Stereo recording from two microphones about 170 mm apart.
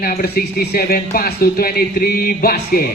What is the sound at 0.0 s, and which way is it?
Speech, 65° left (ahead or behind).